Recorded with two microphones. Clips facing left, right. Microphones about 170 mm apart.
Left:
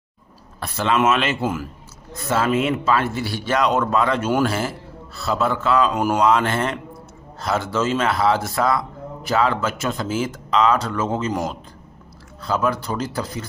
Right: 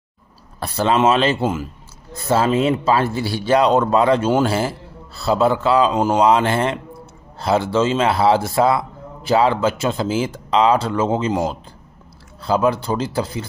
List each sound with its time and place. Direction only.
0.6 s speech: 35° right (ahead or behind)